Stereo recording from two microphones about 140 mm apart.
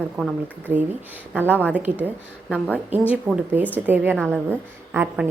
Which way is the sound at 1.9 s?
10° right (ahead or behind).